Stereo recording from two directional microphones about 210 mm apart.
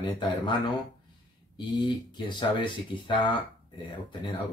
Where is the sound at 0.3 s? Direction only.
20° left (ahead or behind).